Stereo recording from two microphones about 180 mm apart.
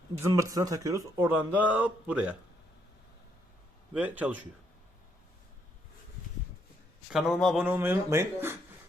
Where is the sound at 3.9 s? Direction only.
10° right (ahead or behind).